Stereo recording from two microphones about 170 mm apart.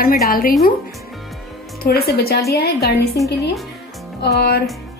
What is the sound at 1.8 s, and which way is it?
Speech, 65° left (ahead or behind).